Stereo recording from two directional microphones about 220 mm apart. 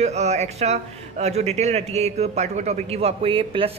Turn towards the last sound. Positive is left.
turn(degrees=-25)  # may be behind; listen again after turning